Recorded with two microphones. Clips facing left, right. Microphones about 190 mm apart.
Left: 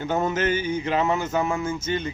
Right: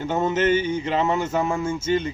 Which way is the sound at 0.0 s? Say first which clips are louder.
Right 2 dB; 25° right (ahead or behind).